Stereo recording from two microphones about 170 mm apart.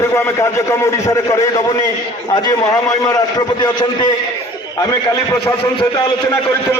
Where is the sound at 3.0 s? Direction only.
25° left (ahead or behind).